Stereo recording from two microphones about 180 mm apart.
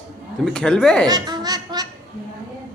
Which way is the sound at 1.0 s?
25° right (ahead or behind).